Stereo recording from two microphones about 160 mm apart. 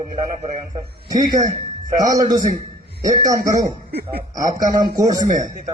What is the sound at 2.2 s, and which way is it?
A man's voice, 25° right (ahead or behind).